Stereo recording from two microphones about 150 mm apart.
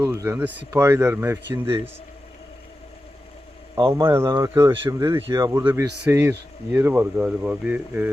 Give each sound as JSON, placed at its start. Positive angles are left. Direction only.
{"t": 0.0, "sound": "speech", "side_deg": -15}
{"t": 3.9, "sound": "speech", "side_deg": -20}